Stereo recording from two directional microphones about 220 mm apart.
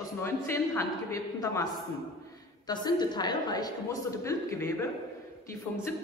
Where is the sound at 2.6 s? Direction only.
20° left (ahead or behind).